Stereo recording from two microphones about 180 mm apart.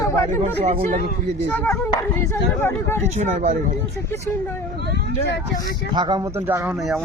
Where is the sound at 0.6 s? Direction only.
35° right (ahead or behind).